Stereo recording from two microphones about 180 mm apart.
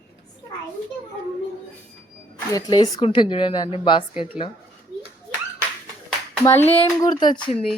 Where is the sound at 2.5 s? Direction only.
20° left (ahead or behind).